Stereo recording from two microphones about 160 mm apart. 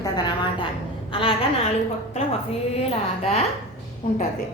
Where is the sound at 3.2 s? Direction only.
40° left (ahead or behind).